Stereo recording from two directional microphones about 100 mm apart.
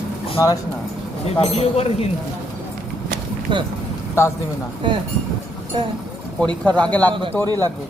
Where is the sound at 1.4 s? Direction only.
90° left.